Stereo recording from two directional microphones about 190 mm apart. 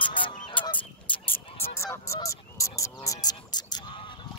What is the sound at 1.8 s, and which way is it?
Goose, 15° left (ahead or behind).